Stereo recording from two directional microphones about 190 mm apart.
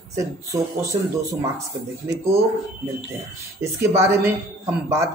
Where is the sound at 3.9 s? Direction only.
15° right (ahead or behind).